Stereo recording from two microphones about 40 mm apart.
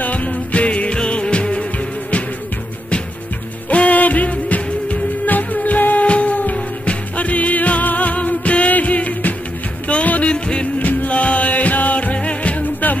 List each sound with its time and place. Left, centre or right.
0.0 s music: left
3.7 s music: left
10.3 s music: left
10.8 s music: left
11.1 s music: left